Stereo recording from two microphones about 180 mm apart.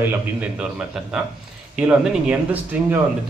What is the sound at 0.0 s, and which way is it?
A man's voice, 5° right (ahead or behind).